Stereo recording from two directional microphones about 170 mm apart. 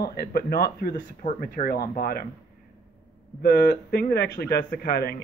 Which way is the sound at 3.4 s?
65° left (ahead or behind).